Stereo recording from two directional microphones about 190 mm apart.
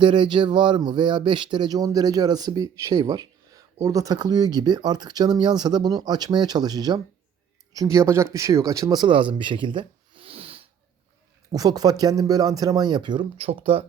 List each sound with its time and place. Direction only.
0.0 s speech: 25° right (ahead or behind)
11.5 s speech: 20° right (ahead or behind)